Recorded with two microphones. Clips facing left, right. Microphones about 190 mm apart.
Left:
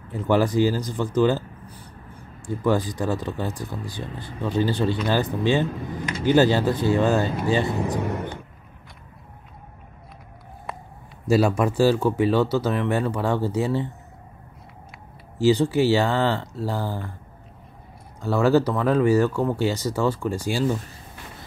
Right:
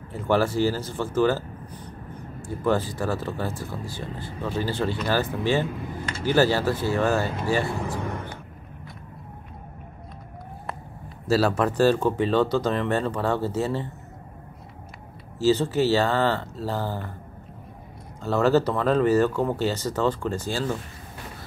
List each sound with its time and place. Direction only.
0.1 s speech: 15° left (ahead or behind)
2.6 s speech: 15° left (ahead or behind)
11.2 s speech: 15° left (ahead or behind)
15.3 s speech: 15° left (ahead or behind)
18.2 s speech: 10° left (ahead or behind)